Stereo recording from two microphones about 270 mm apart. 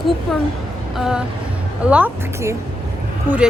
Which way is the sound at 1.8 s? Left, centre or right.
Centre.